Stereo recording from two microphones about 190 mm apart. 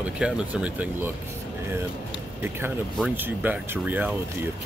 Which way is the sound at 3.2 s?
10° right (ahead or behind).